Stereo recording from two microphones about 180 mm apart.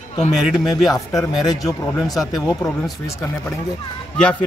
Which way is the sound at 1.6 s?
20° left (ahead or behind).